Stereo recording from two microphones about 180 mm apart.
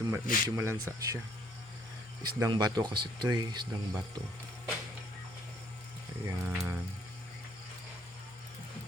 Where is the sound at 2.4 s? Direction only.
20° right (ahead or behind).